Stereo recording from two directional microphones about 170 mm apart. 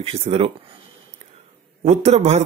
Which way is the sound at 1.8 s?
40° right (ahead or behind).